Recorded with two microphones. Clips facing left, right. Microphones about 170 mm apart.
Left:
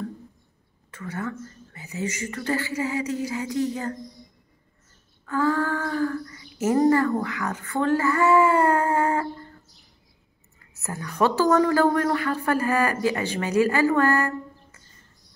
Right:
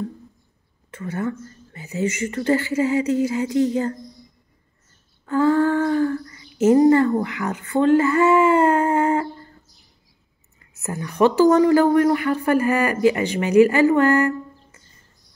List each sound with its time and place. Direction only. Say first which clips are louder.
0.9 s speech: right 5 dB; 25° right (ahead or behind)
5.2 s speech: right 6 dB; 25° right (ahead or behind)
10.8 s a woman's voice: right 5 dB; 20° right (ahead or behind)